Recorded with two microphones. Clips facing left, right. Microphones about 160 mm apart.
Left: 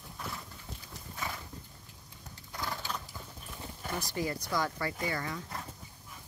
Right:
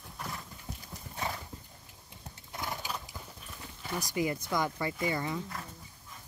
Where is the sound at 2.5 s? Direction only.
20° right (ahead or behind).